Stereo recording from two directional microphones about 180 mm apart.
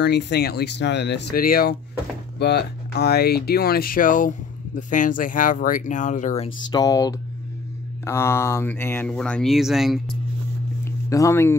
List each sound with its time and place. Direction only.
0.0 s speech: 70° left (ahead or behind)
2.3 s speech: 70° left (ahead or behind); by 6.5 s 40° left (ahead or behind)
6.7 s speech: 20° left (ahead or behind); by 10.1 s centre (ahead or behind)
11.1 s speech: 15° left (ahead or behind)